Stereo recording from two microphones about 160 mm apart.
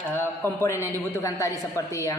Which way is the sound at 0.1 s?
15° left (ahead or behind).